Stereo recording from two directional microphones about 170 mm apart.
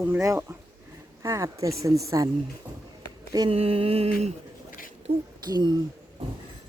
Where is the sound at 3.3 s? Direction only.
30° right (ahead or behind).